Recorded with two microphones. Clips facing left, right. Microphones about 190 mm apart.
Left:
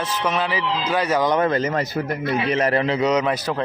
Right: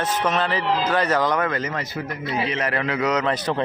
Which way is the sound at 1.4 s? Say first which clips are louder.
Left 5 dB; 30° left (ahead or behind).